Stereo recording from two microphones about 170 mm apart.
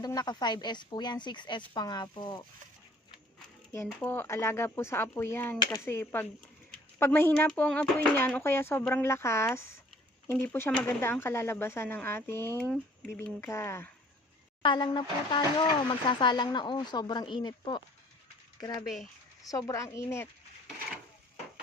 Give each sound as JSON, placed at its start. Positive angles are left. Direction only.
{"t": 0.0, "sound": "speech", "side_deg": 25}
{"t": 3.8, "sound": "speech", "side_deg": 10}
{"t": 14.6, "sound": "speech", "side_deg": 25}